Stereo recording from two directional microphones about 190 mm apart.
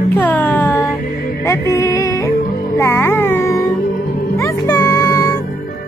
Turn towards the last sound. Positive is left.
turn(degrees=15)  # may be behind; listen again after turning